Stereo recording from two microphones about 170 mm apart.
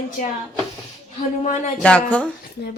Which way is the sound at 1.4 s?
45° left (ahead or behind).